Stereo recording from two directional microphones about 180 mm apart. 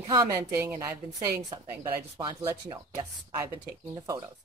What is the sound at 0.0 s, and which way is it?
Speech, 20° right (ahead or behind).